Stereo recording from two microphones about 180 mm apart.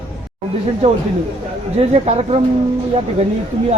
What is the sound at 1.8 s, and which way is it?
Speech, 35° right (ahead or behind).